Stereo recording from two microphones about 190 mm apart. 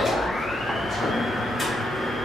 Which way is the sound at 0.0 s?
Centre (ahead or behind).